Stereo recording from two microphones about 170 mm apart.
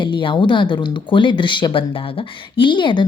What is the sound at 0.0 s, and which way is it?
Speech, 30° left (ahead or behind).